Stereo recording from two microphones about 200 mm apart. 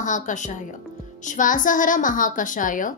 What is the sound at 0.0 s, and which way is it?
A woman's voice, 40° left (ahead or behind).